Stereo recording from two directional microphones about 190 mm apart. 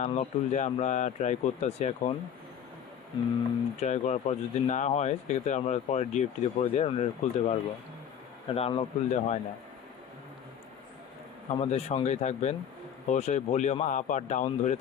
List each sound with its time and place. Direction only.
0.0 s speech: 35° left (ahead or behind)
3.8 s speech: 35° left (ahead or behind)
11.5 s speech: 35° left (ahead or behind)